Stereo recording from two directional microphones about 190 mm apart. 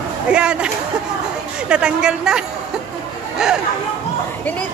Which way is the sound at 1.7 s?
5° right (ahead or behind).